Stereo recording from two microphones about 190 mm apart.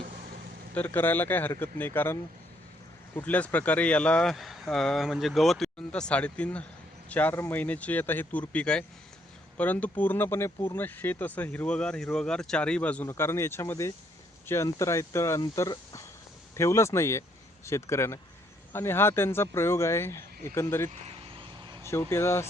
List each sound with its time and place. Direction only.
0.7 s speech: 10° left (ahead or behind)
3.2 s speech: 10° left (ahead or behind)
20.9 s vehicle: 30° right (ahead or behind)
21.8 s speech: 15° left (ahead or behind)